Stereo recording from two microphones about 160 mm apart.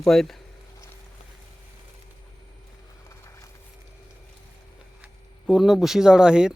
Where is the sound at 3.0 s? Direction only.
20° left (ahead or behind).